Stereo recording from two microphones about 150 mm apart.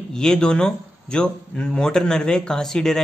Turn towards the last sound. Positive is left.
turn(degrees=5)  # may be behind; listen again after turning